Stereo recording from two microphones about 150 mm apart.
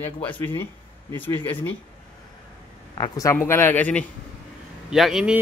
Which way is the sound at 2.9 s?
30° left (ahead or behind).